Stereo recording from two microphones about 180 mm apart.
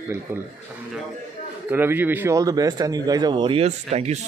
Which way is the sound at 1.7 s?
10° right (ahead or behind).